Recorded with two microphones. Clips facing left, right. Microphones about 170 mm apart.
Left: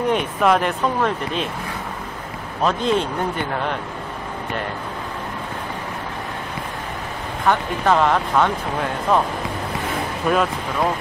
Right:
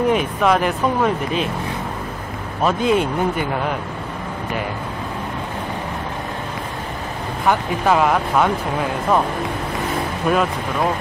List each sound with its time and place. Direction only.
0.1 s speech: centre (ahead or behind)
2.6 s speech: 10° right (ahead or behind)
7.4 s speech: 10° right (ahead or behind)
10.3 s speech: centre (ahead or behind)